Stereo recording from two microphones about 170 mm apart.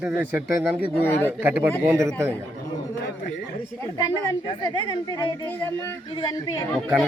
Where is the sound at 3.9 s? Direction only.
25° left (ahead or behind).